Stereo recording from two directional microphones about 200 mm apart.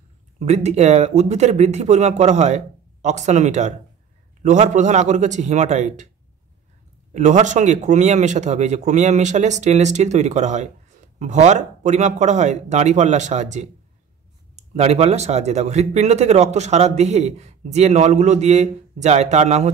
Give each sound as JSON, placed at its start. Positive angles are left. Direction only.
{"t": 0.5, "sound": "speech", "side_deg": -35}
{"t": 7.2, "sound": "speech", "side_deg": -35}